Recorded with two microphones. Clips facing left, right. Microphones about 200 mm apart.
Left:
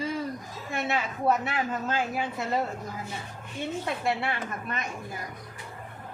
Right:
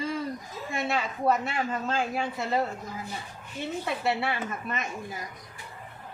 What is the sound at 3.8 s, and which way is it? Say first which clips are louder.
Speech: right 2 dB; 5° right (ahead or behind).